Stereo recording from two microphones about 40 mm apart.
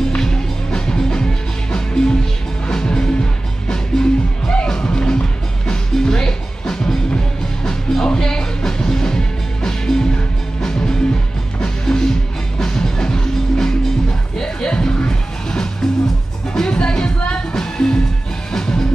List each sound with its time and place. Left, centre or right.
0.2 s music: centre